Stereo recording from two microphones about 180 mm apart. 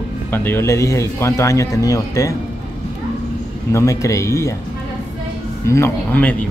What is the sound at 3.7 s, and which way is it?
Speech, 15° left (ahead or behind).